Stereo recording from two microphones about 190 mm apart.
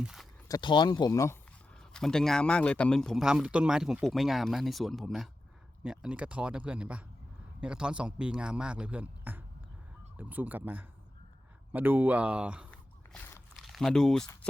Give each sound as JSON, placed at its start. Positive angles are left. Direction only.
{"t": 0.0, "sound": "speech", "side_deg": -5}
{"t": 0.4, "sound": "speech", "side_deg": 20}
{"t": 1.7, "sound": "a man's voice", "side_deg": 5}
{"t": 12.7, "sound": "biting", "side_deg": 10}
{"t": 13.6, "sound": "speech", "side_deg": 0}